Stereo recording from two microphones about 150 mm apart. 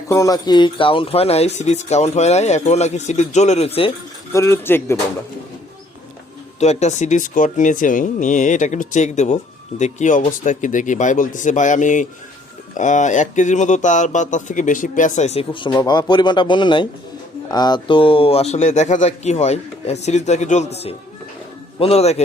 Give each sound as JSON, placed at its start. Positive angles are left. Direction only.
{"t": 0.1, "sound": "speech", "side_deg": 25}
{"t": 4.3, "sound": "speech", "side_deg": 20}
{"t": 6.6, "sound": "speech", "side_deg": 50}